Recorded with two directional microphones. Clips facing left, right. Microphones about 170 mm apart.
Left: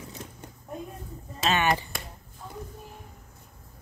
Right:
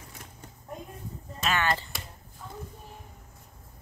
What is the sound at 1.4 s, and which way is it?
Speech, 20° left (ahead or behind).